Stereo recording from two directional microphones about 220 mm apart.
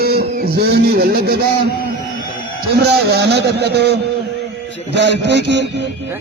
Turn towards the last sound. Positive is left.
turn(degrees=-50)  # may be behind; listen again after turning